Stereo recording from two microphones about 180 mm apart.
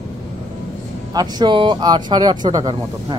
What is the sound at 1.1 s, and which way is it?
Speech, 25° right (ahead or behind).